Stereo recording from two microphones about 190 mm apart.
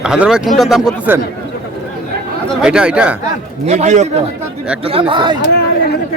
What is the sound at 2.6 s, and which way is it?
Speech, 5° right (ahead or behind).